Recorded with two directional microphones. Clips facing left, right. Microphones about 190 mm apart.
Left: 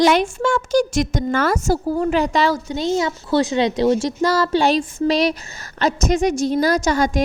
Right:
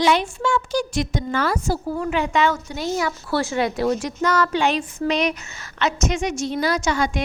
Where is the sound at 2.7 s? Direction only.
25° left (ahead or behind); by 7.2 s 40° left (ahead or behind).